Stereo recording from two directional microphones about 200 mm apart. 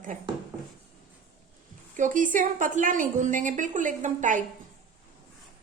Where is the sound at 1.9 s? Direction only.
40° right (ahead or behind).